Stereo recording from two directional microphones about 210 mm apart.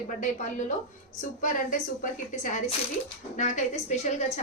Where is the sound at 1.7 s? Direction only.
40° left (ahead or behind).